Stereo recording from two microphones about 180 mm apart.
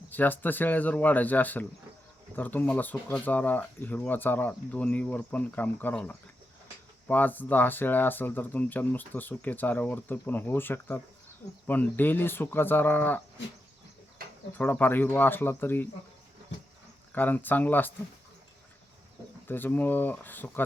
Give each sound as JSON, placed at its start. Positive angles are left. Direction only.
{"t": 0.1, "sound": "speech", "side_deg": 10}
{"t": 14.2, "sound": "insect", "side_deg": -55}
{"t": 14.6, "sound": "speech", "side_deg": 10}
{"t": 17.2, "sound": "speech", "side_deg": 10}
{"t": 19.5, "sound": "speech", "side_deg": 10}